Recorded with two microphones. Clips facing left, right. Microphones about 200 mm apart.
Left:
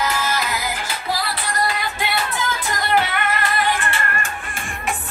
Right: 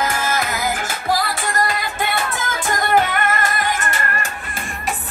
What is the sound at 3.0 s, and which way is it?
Music, 45° right (ahead or behind).